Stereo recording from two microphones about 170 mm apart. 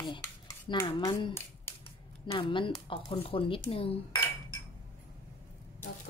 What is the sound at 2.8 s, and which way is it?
A woman's voice, 30° left (ahead or behind).